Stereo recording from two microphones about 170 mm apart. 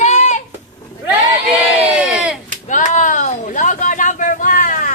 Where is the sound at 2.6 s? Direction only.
45° left (ahead or behind).